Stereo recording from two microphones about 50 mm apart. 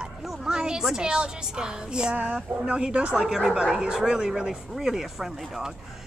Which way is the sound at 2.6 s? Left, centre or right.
Centre.